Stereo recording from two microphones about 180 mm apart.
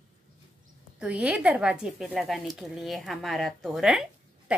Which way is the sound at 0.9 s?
5° right (ahead or behind).